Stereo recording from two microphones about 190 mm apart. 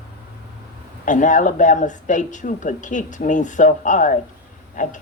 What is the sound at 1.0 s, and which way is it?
A woman's voice, 40° left (ahead or behind).